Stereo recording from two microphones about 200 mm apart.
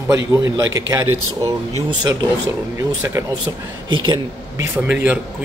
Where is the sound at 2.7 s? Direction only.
15° right (ahead or behind).